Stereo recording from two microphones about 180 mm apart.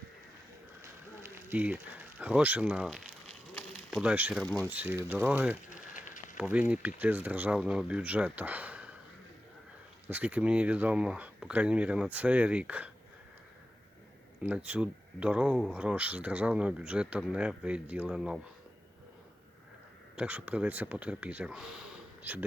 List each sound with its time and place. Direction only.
1.2 s speech: 10° right (ahead or behind)
4.4 s speech: 10° left (ahead or behind)
4.7 s speech: 10° right (ahead or behind)
5.6 s a sound: 45° left (ahead or behind)
6.3 s speech: 5° right (ahead or behind)
10.1 s speech: 10° right (ahead or behind)
14.4 s speech: 10° right (ahead or behind)
20.1 s speech: 10° right (ahead or behind)